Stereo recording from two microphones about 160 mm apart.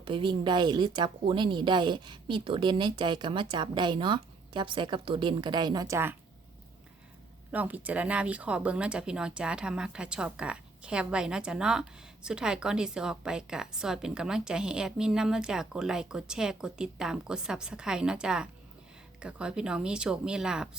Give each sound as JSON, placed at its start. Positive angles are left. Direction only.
{"t": 0.0, "sound": "speech", "side_deg": -30}
{"t": 7.5, "sound": "speech", "side_deg": -10}